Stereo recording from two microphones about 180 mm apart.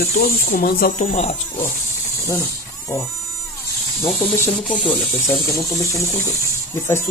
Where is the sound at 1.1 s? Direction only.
35° left (ahead or behind).